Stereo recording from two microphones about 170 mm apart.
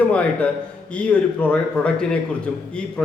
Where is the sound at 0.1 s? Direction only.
5° left (ahead or behind).